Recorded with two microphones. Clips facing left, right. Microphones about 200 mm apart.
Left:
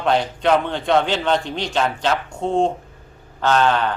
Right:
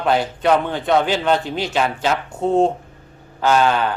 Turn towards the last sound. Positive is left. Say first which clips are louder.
# right 1 dB
turn(degrees=-10)  # may be behind; listen again after turning